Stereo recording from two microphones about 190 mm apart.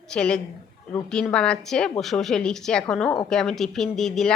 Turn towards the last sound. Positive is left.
turn(degrees=0)  # may be behind; listen again after turning